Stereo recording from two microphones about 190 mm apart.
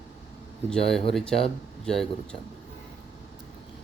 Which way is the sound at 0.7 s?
Centre (ahead or behind).